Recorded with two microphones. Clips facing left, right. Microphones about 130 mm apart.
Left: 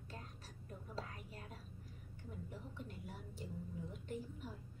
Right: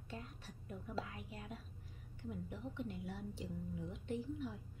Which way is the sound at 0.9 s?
40° left (ahead or behind).